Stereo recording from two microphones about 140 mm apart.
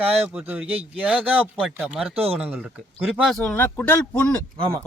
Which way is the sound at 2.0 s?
45° right (ahead or behind).